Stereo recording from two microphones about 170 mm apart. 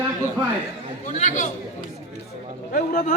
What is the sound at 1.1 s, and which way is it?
Speech, 45° left (ahead or behind).